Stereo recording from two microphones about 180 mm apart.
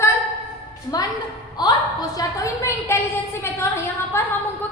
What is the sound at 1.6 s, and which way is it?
A woman's voice, 20° left (ahead or behind).